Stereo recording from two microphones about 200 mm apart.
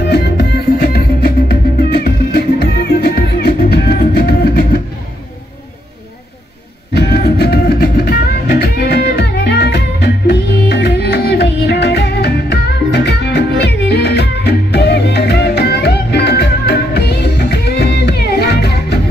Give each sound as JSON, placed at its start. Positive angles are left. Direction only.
{"t": 0.0, "sound": "music", "side_deg": 55}
{"t": 6.9, "sound": "music", "side_deg": 55}